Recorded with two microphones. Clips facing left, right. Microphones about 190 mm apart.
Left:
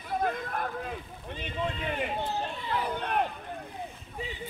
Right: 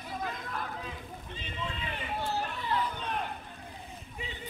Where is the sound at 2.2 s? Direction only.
20° left (ahead or behind).